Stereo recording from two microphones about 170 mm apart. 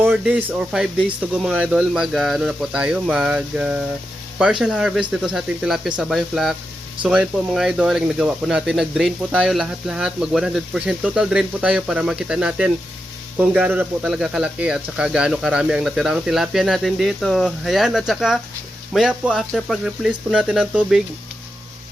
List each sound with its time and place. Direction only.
0.0 s speech: 10° right (ahead or behind)